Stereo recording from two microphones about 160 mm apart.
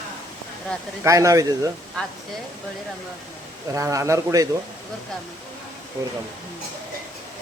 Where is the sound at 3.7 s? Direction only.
20° right (ahead or behind).